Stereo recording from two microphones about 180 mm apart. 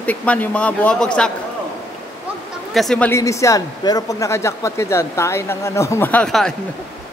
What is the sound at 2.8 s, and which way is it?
Speech, 5° left (ahead or behind).